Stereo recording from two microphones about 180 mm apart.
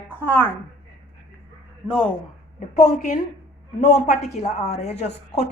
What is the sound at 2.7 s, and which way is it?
Speech, 40° left (ahead or behind).